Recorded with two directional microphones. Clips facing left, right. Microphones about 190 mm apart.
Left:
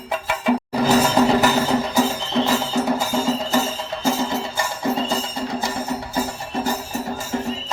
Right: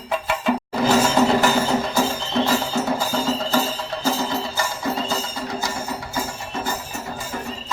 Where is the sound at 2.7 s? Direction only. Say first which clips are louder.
Left 2 dB; 20° left (ahead or behind); by 7.7 s 35° left (ahead or behind).